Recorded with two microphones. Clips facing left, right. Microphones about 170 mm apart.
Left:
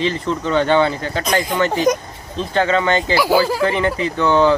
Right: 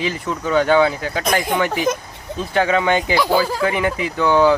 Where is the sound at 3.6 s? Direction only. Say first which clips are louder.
Left 2 dB; 10° right (ahead or behind).